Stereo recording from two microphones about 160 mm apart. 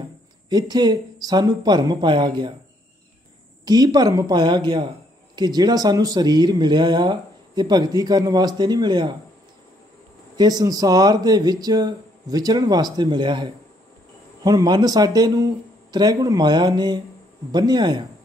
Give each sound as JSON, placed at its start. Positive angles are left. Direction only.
{"t": 0.5, "sound": "speech", "side_deg": -25}
{"t": 3.6, "sound": "speech", "side_deg": -25}
{"t": 10.3, "sound": "speech", "side_deg": -25}